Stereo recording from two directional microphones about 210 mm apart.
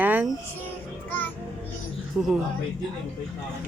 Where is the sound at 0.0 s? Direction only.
10° right (ahead or behind).